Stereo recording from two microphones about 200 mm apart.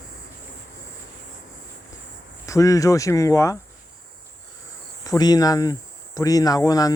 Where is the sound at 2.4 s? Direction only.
15° left (ahead or behind).